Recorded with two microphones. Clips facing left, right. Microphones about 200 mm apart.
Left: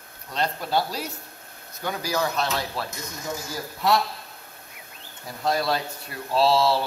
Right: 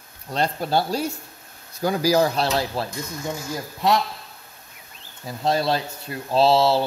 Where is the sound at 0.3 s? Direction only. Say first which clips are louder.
Right 3 dB; 30° right (ahead or behind).